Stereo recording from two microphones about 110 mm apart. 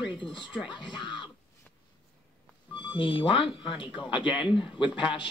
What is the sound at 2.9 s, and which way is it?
Speech, 50° left (ahead or behind).